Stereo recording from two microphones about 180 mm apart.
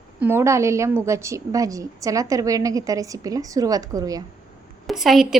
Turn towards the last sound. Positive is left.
turn(degrees=0)  # may be behind; listen again after turning